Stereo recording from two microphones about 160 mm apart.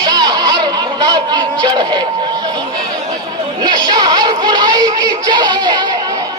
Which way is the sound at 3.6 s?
25° right (ahead or behind).